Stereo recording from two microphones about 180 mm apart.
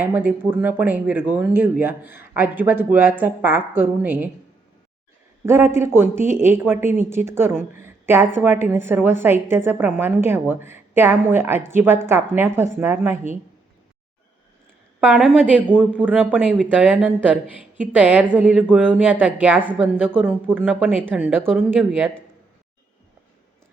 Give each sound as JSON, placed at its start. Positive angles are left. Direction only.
{"t": 0.0, "sound": "speech", "side_deg": -10}
{"t": 5.5, "sound": "speech", "side_deg": -15}
{"t": 15.0, "sound": "a woman's voice", "side_deg": -5}